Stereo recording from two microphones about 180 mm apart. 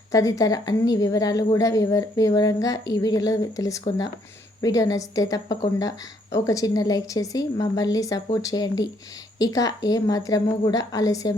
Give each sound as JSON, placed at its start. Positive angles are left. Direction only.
{"t": 0.1, "sound": "speech", "side_deg": 20}